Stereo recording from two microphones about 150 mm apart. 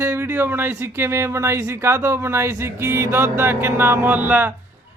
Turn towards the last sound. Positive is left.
turn(degrees=-10)  # may be behind; listen again after turning